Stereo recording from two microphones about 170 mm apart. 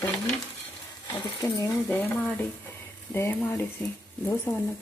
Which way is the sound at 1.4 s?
15° left (ahead or behind).